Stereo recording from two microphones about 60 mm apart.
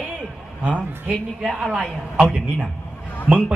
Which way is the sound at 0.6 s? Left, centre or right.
Right.